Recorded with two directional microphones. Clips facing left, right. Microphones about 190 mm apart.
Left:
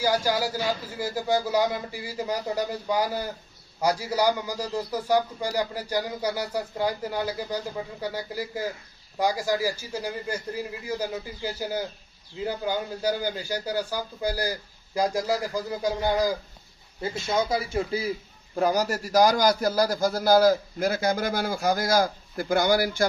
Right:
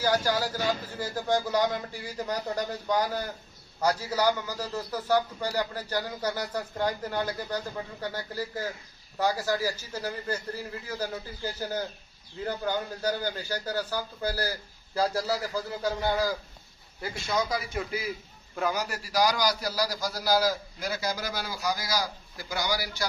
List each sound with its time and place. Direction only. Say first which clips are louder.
0.0 s a man's voice: left 2 dB; 10° left (ahead or behind); by 23.0 s 55° left (ahead or behind)